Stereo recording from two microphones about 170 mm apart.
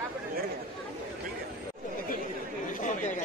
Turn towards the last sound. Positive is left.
turn(degrees=45)  # may be behind; listen again after turning